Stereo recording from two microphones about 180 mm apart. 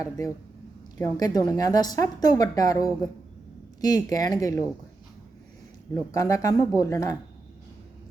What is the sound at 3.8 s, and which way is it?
Speech, 20° left (ahead or behind).